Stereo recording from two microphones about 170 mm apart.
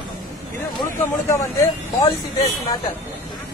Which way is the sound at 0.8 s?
20° left (ahead or behind).